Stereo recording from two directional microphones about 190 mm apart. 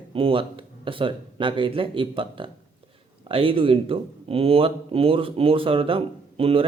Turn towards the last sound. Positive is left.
turn(degrees=-30)  # may be behind; listen again after turning